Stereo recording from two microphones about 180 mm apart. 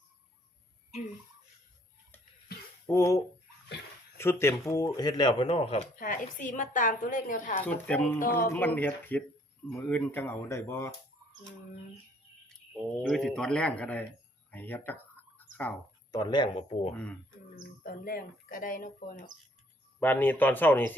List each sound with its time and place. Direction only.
2.8 s speech: 15° left (ahead or behind); by 5.9 s 35° left (ahead or behind)
6.0 s speech: 50° left (ahead or behind)
7.6 s speech: 5° left (ahead or behind)
12.5 s speech: centre (ahead or behind)
14.5 s a sound: 10° left (ahead or behind)
16.1 s speech: 25° left (ahead or behind)
16.9 s speech: 5° left (ahead or behind)
17.6 s speech: 55° left (ahead or behind)
20.0 s speech: 10° left (ahead or behind)